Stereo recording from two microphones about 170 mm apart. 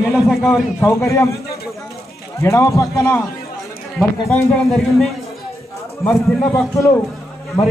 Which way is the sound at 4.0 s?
5° left (ahead or behind).